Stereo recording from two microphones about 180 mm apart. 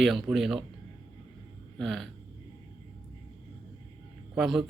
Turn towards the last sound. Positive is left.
turn(degrees=0)  # may be behind; listen again after turning